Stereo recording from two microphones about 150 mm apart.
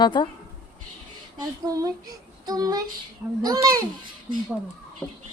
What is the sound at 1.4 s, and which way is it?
Speech, 25° right (ahead or behind).